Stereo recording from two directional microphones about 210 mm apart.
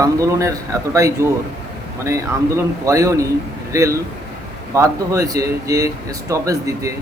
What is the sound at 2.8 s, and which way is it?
Speech, 15° right (ahead or behind).